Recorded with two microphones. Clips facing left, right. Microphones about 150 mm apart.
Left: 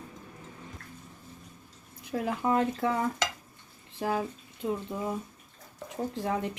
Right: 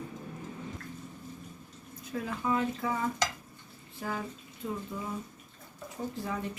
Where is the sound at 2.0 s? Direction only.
70° left (ahead or behind).